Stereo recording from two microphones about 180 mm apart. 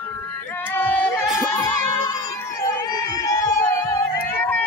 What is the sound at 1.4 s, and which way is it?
Music, 20° left (ahead or behind).